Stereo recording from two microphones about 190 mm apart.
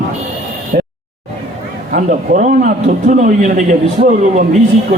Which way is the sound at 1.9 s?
40° right (ahead or behind).